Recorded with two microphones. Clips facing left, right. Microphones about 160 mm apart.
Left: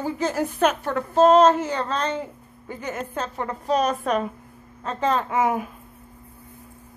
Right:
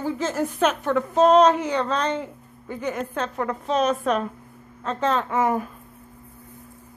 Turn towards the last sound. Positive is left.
turn(degrees=5)  # may be behind; listen again after turning